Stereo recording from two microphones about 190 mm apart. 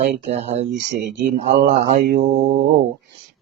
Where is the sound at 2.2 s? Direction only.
75° right (ahead or behind).